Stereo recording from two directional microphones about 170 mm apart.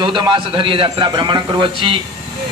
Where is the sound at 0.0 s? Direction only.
30° right (ahead or behind).